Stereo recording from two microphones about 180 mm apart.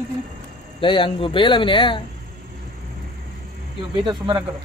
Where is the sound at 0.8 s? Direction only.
30° left (ahead or behind).